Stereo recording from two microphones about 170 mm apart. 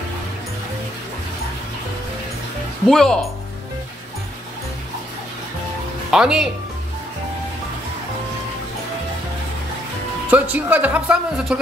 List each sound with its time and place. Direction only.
2.9 s speech: centre (ahead or behind)
6.0 s speech: 5° right (ahead or behind)
10.3 s speech: 10° right (ahead or behind)